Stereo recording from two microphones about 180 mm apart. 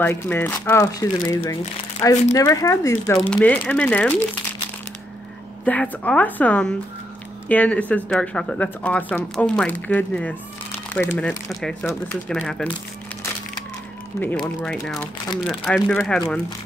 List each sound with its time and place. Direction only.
0.0 s speech: 10° left (ahead or behind)
5.7 s speech: 5° left (ahead or behind)
14.2 s speech: centre (ahead or behind)